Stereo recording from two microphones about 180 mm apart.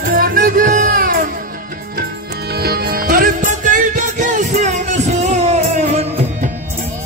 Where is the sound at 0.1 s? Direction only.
50° right (ahead or behind).